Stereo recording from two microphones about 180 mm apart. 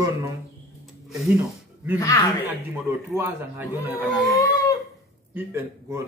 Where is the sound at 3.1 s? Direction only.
15° right (ahead or behind).